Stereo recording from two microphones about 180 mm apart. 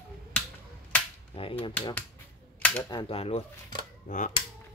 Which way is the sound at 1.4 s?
30° left (ahead or behind).